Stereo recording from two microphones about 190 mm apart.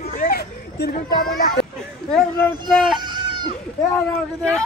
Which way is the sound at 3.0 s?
25° right (ahead or behind).